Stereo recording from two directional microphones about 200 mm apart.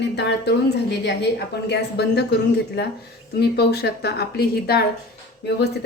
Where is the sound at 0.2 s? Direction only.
60° left (ahead or behind).